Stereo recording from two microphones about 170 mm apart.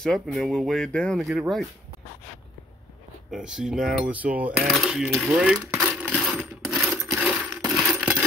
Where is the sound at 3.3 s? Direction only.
5° right (ahead or behind).